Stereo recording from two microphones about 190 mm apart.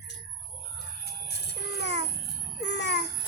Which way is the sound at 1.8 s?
65° left (ahead or behind).